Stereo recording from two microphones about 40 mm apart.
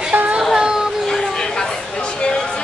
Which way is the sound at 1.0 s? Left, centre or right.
Centre.